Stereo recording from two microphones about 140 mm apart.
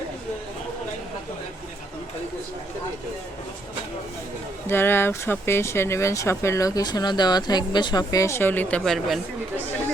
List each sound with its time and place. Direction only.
4.7 s speech: 15° left (ahead or behind)